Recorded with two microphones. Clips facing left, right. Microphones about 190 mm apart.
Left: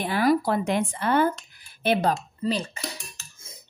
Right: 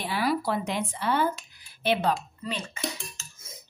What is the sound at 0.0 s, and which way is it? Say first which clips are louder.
Speech: left 5 dB; 50° left (ahead or behind).